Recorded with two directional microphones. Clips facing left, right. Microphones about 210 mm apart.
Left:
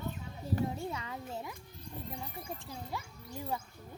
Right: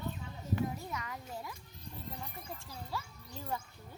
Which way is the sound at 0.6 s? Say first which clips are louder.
Left 2 dB; 30° left (ahead or behind).